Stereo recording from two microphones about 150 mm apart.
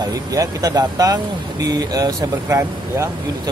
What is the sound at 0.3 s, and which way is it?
Speech, 25° right (ahead or behind).